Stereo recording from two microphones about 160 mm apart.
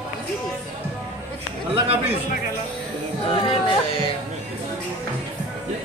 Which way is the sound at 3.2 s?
35° left (ahead or behind).